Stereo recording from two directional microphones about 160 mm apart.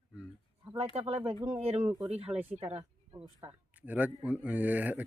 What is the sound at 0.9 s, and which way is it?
Speech, 40° right (ahead or behind).